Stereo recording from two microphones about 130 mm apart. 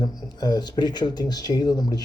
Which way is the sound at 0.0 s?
30° left (ahead or behind).